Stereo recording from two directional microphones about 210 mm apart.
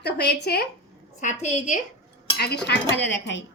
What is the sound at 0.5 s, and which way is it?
Speech, 50° left (ahead or behind).